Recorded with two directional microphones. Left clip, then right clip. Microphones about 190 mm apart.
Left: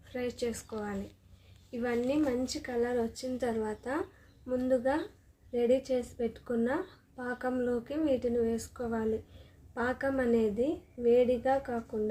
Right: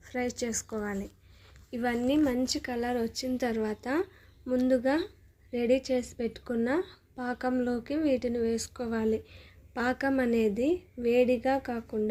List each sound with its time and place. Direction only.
0.0 s a woman's voice: 50° right (ahead or behind)